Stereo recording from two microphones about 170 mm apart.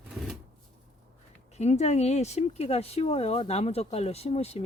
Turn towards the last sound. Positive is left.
turn(degrees=35)  # may be behind; listen again after turning